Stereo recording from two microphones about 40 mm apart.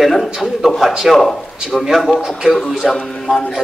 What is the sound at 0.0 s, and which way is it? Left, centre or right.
A man's voice, centre.